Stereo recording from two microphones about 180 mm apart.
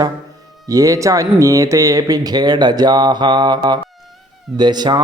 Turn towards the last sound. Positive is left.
turn(degrees=-25)  # may be behind; listen again after turning